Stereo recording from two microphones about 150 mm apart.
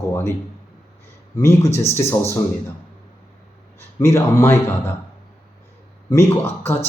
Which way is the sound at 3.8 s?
15° left (ahead or behind).